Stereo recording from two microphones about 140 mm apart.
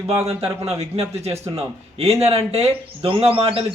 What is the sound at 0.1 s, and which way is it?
Speech, 45° right (ahead or behind).